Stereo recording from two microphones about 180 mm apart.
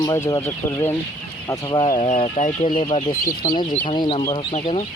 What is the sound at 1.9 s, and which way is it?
Speech, 40° left (ahead or behind).